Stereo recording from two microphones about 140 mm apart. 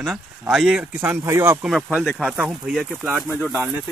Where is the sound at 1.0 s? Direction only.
20° right (ahead or behind).